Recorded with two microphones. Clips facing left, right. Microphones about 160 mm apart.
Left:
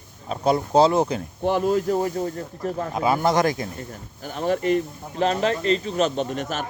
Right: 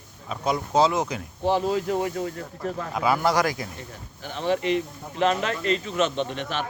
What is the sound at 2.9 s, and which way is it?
Speech, 25° left (ahead or behind).